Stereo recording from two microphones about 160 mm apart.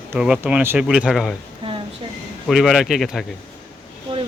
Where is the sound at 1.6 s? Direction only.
35° right (ahead or behind).